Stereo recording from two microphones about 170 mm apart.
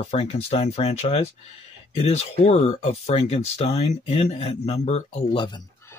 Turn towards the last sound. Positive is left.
turn(degrees=25)  # may be behind; listen again after turning